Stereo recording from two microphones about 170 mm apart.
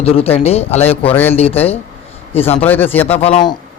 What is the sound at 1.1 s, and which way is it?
Speech, 10° left (ahead or behind).